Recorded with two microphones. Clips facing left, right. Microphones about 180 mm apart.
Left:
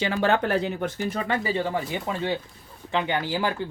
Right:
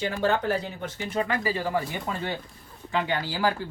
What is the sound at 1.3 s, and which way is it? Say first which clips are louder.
Speech: left 1 dB; 25° left (ahead or behind).